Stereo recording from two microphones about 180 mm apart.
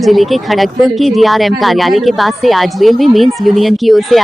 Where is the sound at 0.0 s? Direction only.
Centre (ahead or behind).